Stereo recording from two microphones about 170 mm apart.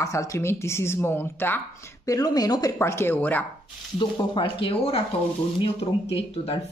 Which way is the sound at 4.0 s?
30° left (ahead or behind).